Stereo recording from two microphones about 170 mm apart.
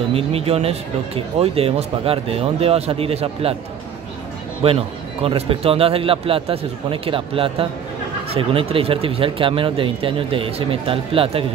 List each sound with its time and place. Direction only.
0.1 s speech: 35° right (ahead or behind)
4.6 s speech: 35° right (ahead or behind)